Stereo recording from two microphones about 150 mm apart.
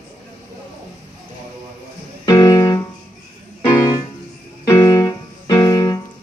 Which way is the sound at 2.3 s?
20° left (ahead or behind).